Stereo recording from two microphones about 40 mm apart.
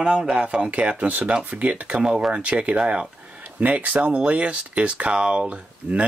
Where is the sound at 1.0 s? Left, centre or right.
Right.